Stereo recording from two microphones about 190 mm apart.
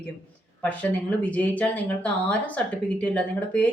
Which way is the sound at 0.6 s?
5° left (ahead or behind).